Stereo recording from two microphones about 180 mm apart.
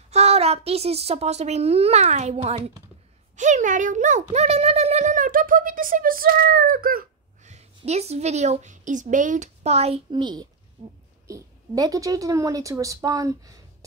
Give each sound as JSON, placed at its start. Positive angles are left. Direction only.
{"t": 0.1, "sound": "a woman's voice", "side_deg": -35}
{"t": 10.8, "sound": "a woman's voice", "side_deg": -35}
{"t": 11.2, "sound": "a woman's voice", "side_deg": -20}